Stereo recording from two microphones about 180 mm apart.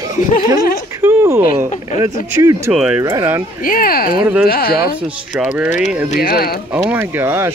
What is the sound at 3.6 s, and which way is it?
Speech, 50° left (ahead or behind).